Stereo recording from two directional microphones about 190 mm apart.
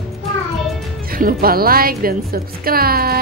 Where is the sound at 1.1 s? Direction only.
50° right (ahead or behind).